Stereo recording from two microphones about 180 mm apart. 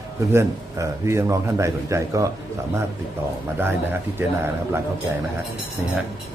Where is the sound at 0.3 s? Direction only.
15° right (ahead or behind).